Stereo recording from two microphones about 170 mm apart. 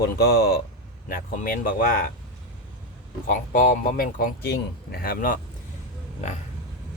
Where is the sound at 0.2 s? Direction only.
65° left (ahead or behind).